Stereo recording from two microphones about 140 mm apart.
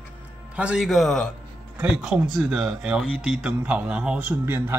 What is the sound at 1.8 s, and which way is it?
Speech, 10° right (ahead or behind).